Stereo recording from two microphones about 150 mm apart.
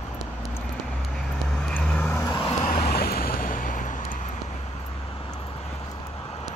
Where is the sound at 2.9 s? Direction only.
90° left; by 3.8 s 60° left (ahead or behind).